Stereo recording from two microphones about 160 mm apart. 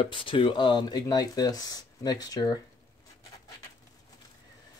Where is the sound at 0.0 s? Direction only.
30° left (ahead or behind).